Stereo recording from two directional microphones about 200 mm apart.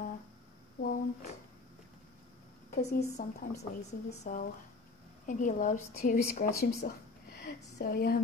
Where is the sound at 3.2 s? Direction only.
40° left (ahead or behind).